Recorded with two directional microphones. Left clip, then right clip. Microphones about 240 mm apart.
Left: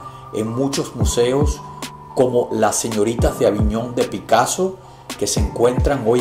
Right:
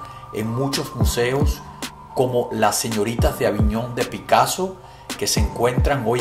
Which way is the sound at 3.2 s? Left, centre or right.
Right.